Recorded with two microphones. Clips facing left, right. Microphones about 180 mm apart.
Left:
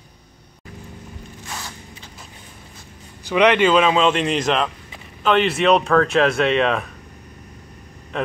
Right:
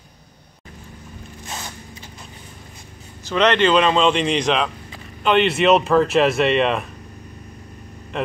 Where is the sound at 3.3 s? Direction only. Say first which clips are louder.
Left 1 dB; 10° left (ahead or behind).